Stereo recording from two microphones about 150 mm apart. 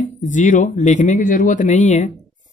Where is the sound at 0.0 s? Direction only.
55° left (ahead or behind).